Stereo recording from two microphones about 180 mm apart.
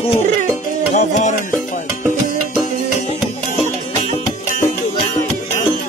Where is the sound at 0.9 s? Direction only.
45° left (ahead or behind).